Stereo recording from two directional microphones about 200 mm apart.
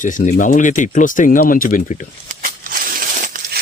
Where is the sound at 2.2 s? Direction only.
45° right (ahead or behind).